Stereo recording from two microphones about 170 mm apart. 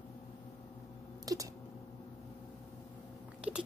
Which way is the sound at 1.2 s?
20° right (ahead or behind).